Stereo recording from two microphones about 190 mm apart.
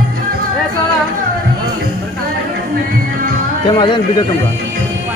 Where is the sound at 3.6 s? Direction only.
25° left (ahead or behind).